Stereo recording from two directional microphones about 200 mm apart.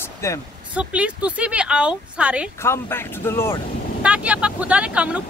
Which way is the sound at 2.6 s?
10° left (ahead or behind).